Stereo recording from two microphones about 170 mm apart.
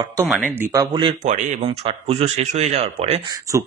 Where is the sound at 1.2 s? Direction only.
45° right (ahead or behind).